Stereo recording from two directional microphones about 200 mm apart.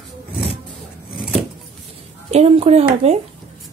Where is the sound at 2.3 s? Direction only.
30° right (ahead or behind).